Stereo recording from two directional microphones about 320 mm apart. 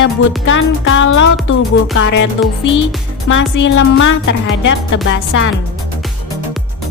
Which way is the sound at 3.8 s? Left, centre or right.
Left.